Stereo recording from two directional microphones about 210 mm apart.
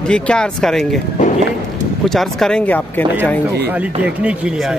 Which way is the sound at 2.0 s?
Centre (ahead or behind).